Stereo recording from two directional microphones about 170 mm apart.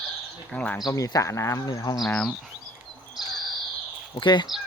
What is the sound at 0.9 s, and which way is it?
Speech, 20° left (ahead or behind).